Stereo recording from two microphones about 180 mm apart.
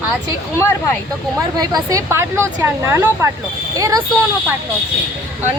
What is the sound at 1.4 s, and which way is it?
A woman's voice, 20° right (ahead or behind).